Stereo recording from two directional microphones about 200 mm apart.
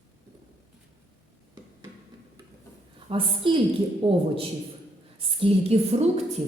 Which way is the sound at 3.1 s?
25° right (ahead or behind).